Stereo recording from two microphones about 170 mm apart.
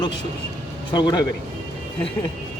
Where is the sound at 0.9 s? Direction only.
25° left (ahead or behind).